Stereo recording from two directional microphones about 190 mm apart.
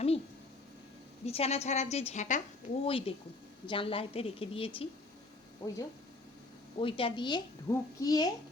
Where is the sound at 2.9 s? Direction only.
30° left (ahead or behind).